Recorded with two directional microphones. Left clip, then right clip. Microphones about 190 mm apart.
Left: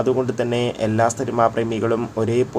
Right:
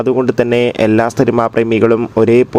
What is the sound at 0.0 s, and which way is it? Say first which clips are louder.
Speech: right 7 dB; 35° right (ahead or behind).